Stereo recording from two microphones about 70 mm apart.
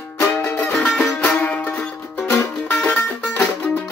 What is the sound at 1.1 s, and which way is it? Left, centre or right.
Music, centre.